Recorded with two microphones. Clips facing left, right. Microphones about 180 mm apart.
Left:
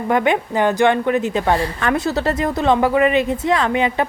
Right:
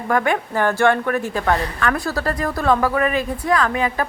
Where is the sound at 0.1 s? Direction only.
20° left (ahead or behind).